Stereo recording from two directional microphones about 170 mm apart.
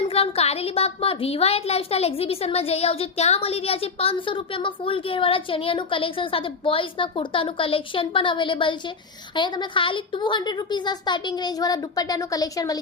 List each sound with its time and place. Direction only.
0.1 s a woman's voice: 35° left (ahead or behind)